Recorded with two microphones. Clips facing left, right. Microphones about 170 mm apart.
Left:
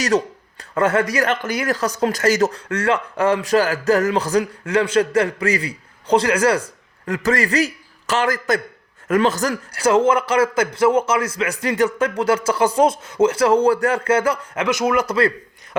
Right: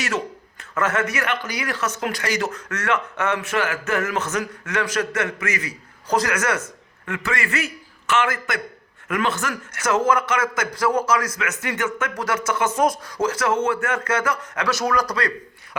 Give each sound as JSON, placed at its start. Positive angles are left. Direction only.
{"t": 0.7, "sound": "a man's voice", "side_deg": 30}